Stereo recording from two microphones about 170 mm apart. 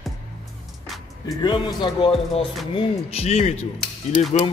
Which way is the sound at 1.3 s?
25° left (ahead or behind).